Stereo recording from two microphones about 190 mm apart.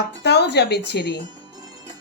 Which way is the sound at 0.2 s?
60° left (ahead or behind).